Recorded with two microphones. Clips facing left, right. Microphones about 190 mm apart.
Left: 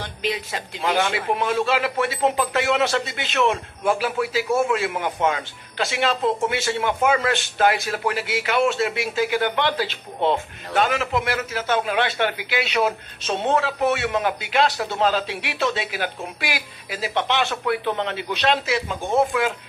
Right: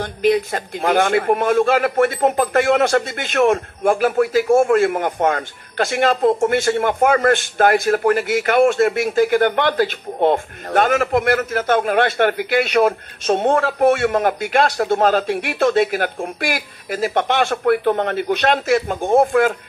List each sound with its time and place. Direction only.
0.0 s a man's voice: 50° right (ahead or behind)